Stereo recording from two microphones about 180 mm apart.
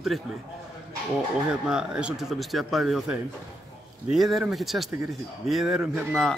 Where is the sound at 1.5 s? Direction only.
5° right (ahead or behind).